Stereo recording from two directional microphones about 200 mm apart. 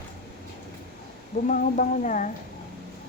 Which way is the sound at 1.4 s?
40° left (ahead or behind).